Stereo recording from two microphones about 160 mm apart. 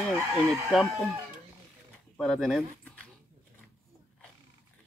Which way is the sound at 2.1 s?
Centre (ahead or behind).